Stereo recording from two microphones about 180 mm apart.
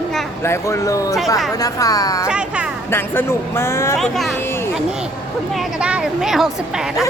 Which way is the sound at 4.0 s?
Centre (ahead or behind).